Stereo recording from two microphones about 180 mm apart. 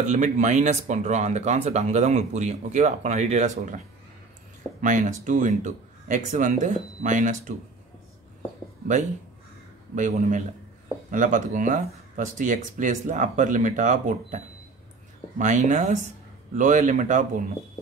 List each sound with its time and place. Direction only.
0.0 s speech: 40° right (ahead or behind)
4.8 s speech: 45° right (ahead or behind)
9.9 s speech: 45° right (ahead or behind)